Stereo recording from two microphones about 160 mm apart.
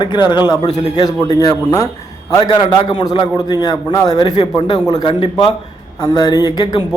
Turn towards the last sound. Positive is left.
turn(degrees=25)  # may be behind; listen again after turning